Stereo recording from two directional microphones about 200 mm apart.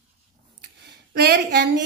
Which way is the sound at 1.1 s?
55° right (ahead or behind).